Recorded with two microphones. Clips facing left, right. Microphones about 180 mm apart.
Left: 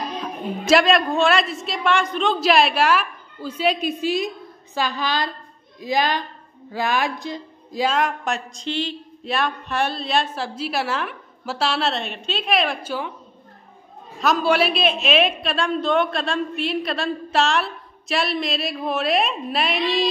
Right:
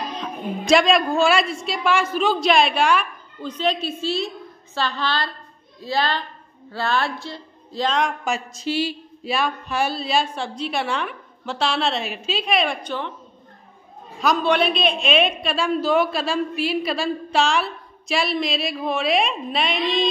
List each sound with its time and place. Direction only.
0.2 s a woman's voice: 5° left (ahead or behind)
14.2 s speech: 5° left (ahead or behind)